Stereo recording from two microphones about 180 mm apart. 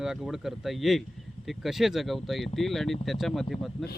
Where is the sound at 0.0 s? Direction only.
5° right (ahead or behind).